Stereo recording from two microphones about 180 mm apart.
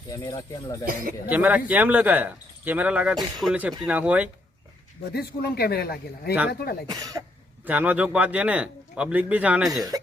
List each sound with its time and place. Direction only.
0.1 s speech: 20° left (ahead or behind)
1.3 s speech: 10° right (ahead or behind)
5.1 s speech: 60° left (ahead or behind)
6.8 s speech: 20° right (ahead or behind); by 9.8 s 5° right (ahead or behind)